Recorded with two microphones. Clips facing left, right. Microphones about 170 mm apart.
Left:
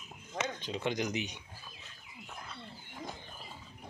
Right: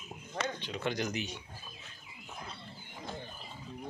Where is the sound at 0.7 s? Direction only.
20° left (ahead or behind).